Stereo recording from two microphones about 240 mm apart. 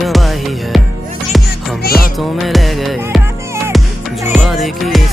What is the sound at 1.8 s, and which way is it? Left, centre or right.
Music, left.